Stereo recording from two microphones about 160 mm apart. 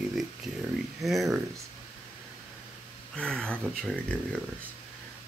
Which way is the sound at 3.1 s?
5° left (ahead or behind).